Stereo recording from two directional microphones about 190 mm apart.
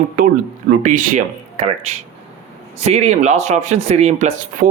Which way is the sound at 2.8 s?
35° right (ahead or behind).